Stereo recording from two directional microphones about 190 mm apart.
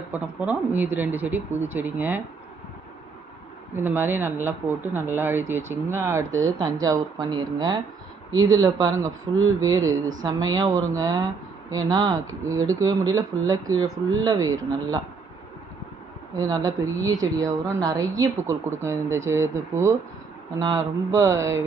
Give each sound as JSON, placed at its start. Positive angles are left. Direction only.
{"t": 0.1, "sound": "speech", "side_deg": -10}
{"t": 3.7, "sound": "speech", "side_deg": -10}
{"t": 16.3, "sound": "speech", "side_deg": -20}